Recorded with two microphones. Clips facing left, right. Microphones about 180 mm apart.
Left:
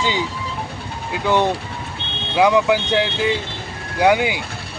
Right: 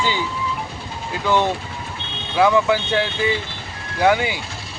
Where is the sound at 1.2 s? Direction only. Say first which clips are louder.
Left 1 dB; 15° left (ahead or behind).